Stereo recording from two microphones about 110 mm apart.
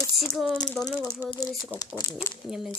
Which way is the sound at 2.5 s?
5° right (ahead or behind).